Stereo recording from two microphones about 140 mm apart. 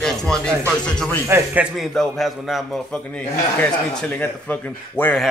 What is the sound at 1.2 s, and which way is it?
Speech, 20° right (ahead or behind).